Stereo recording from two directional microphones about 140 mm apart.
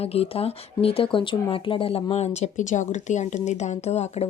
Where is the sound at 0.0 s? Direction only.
45° left (ahead or behind).